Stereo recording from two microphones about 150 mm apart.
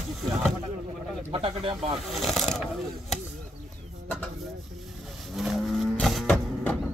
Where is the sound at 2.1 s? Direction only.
Centre (ahead or behind).